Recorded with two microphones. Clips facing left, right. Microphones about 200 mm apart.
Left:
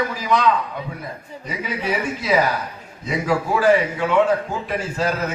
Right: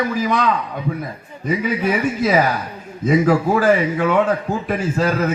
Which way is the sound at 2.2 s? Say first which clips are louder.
Right 1 dB; 50° right (ahead or behind).